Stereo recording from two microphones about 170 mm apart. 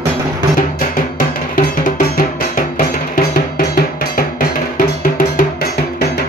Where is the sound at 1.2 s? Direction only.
55° left (ahead or behind).